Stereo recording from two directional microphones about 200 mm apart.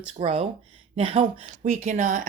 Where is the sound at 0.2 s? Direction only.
30° right (ahead or behind).